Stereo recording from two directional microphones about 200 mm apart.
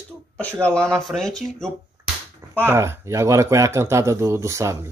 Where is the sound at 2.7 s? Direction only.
15° right (ahead or behind).